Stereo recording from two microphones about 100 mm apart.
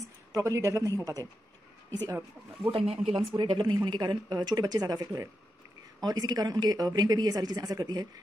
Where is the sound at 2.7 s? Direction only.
85° right.